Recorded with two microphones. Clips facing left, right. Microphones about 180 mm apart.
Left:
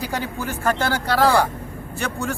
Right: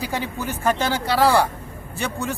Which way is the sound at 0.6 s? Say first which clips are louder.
Even; 15° right (ahead or behind).